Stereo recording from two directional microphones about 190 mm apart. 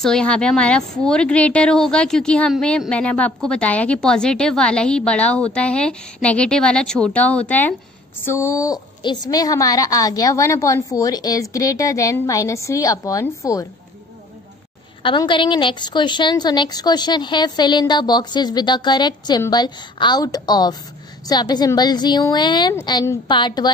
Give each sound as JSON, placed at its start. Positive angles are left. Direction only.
{"t": 0.0, "sound": "a woman's voice", "side_deg": 5}
{"t": 15.0, "sound": "a woman's voice", "side_deg": 25}